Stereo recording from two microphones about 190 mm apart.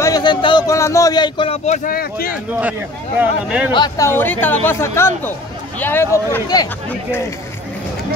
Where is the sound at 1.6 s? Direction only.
40° left (ahead or behind).